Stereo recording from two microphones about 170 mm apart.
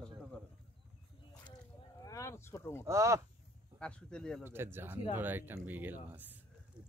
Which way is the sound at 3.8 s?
5° left (ahead or behind).